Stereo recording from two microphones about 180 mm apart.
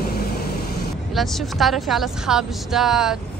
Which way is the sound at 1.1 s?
Centre (ahead or behind).